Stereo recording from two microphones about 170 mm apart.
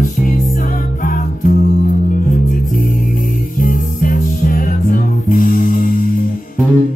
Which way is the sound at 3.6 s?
55° left (ahead or behind).